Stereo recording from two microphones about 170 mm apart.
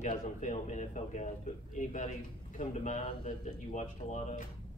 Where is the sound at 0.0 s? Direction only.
45° left (ahead or behind).